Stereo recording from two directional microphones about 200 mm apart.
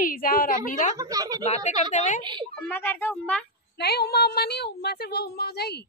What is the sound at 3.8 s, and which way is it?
Speech, 55° left (ahead or behind).